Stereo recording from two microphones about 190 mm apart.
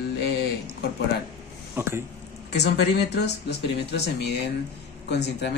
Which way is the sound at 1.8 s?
15° right (ahead or behind).